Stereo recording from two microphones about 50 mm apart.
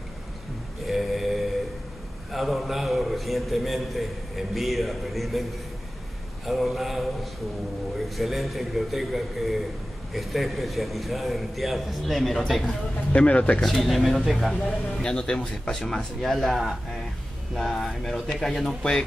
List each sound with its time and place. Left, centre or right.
0.8 s a sound: centre
2.3 s a man's voice: centre
6.4 s a man's voice: centre
8.2 s a man's voice: centre
13.1 s speech: left
13.6 s a man's voice: centre
14.5 s speech: centre
16.2 s a man's voice: centre